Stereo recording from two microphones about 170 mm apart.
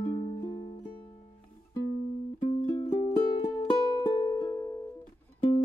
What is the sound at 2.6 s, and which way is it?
Music, 20° left (ahead or behind).